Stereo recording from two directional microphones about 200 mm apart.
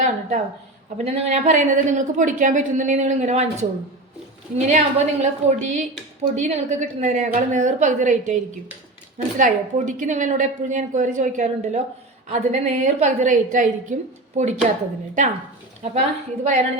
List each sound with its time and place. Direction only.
0.0 s a sound: 40° right (ahead or behind)
0.9 s a woman's voice: 35° right (ahead or behind)
15.8 s a woman's voice: 35° right (ahead or behind)